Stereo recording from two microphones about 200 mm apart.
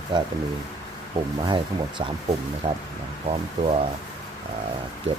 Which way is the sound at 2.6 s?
25° right (ahead or behind).